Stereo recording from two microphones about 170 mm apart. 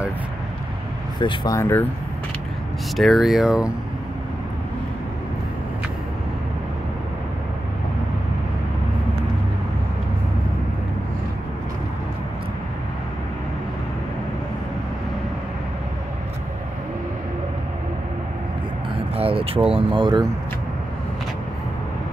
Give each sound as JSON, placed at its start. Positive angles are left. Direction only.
{"t": 1.2, "sound": "speech", "side_deg": 25}
{"t": 3.0, "sound": "speech", "side_deg": 0}
{"t": 19.1, "sound": "speech", "side_deg": -35}